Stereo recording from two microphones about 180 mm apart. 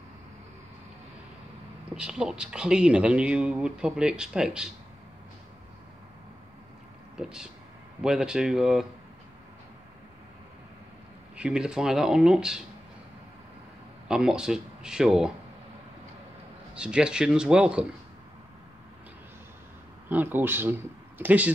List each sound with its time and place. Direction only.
2.0 s speech: 5° right (ahead or behind)
7.2 s speech: 5° right (ahead or behind)
11.3 s speech: 5° right (ahead or behind)
14.0 s speech: 5° right (ahead or behind)
16.7 s speech: 5° right (ahead or behind)
20.1 s speech: 10° right (ahead or behind)